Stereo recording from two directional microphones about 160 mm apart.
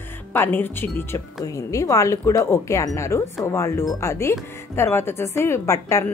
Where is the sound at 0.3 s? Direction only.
10° left (ahead or behind).